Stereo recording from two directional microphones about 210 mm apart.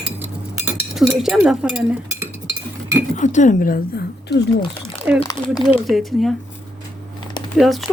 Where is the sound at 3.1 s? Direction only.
35° left (ahead or behind).